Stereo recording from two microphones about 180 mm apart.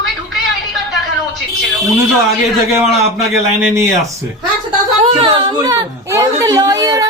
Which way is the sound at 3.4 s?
15° right (ahead or behind).